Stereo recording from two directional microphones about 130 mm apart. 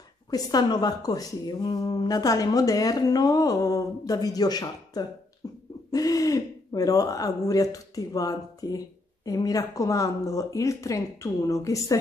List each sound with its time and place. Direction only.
0.3 s speech: 30° left (ahead or behind)